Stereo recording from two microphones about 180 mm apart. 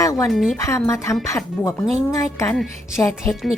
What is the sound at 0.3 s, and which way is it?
Speech, centre (ahead or behind).